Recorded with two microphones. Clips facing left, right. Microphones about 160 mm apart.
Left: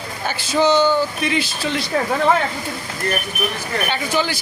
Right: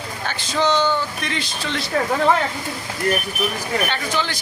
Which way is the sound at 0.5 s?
10° left (ahead or behind).